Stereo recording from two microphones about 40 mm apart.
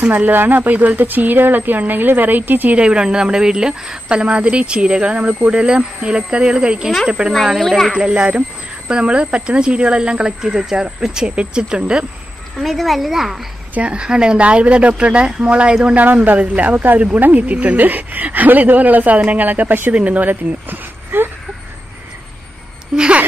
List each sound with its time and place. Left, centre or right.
0.1 s speech: right
2.7 s speech: right
7.5 s a child's voice: centre
8.1 s speech: right
12.5 s a child's voice: centre
13.7 s speech: right
16.3 s speech: right
22.9 s speech: right